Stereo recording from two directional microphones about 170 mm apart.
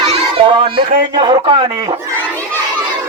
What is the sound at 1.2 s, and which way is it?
Speech, 30° right (ahead or behind).